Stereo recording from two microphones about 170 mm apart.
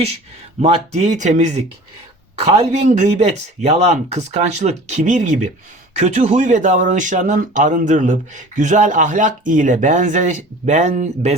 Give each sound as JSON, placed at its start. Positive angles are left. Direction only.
{"t": 0.6, "sound": "speech", "side_deg": -40}